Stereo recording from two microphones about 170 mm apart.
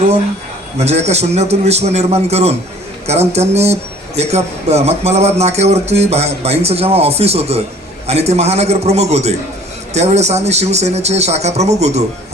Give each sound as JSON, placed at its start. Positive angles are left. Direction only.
{"t": 0.8, "sound": "speech", "side_deg": -40}